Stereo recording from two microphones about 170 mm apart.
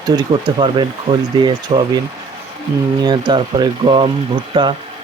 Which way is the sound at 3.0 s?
25° right (ahead or behind).